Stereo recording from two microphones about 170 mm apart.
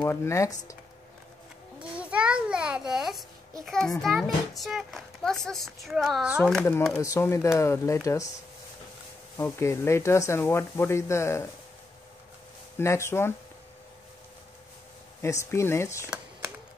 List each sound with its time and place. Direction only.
0.0 s speech: 15° left (ahead or behind)
1.8 s a sound: 5° right (ahead or behind)
3.6 s speech: 5° left (ahead or behind)
6.9 s speech: 15° left (ahead or behind)
9.4 s speech: 15° left (ahead or behind)
12.7 s speech: 15° left (ahead or behind)
15.2 s speech: 15° left (ahead or behind)